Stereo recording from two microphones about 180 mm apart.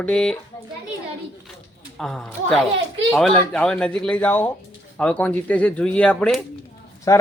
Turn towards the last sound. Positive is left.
turn(degrees=20)  # may be behind; listen again after turning